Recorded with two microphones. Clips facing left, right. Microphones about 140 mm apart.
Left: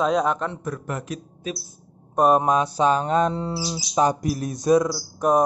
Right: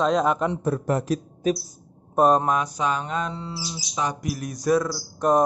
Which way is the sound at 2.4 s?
25° left (ahead or behind).